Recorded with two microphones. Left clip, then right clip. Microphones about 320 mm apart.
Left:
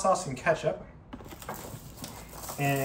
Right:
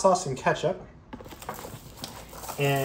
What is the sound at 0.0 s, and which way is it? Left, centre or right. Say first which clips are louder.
Speech: right 4 dB; centre.